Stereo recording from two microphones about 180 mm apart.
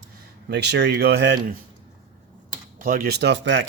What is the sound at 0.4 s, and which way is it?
Speech, 70° right (ahead or behind).